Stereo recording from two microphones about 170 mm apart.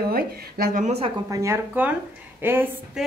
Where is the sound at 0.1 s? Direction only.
60° right (ahead or behind).